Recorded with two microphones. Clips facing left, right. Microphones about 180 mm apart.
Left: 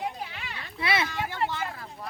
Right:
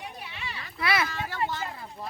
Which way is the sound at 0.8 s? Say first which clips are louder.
Even; 25° left (ahead or behind).